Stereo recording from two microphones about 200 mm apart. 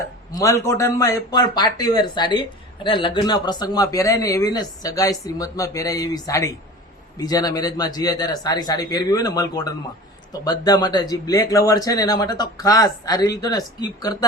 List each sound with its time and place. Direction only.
0.3 s a man's voice: 15° left (ahead or behind)